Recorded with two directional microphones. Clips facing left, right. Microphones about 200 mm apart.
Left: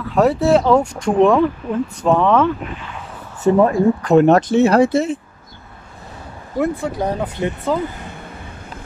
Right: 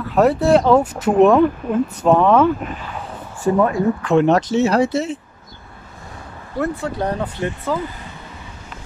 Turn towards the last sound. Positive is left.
turn(degrees=20)  # may be behind; listen again after turning